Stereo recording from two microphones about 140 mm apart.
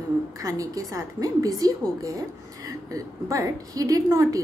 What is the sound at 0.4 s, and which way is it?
A woman's voice, 25° right (ahead or behind).